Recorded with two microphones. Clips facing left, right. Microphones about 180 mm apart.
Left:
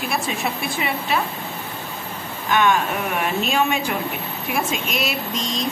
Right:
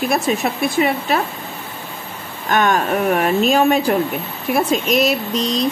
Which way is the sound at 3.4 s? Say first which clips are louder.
Right 8 dB; 40° right (ahead or behind).